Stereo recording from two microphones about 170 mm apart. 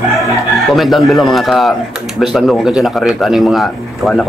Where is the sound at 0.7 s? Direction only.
Centre (ahead or behind).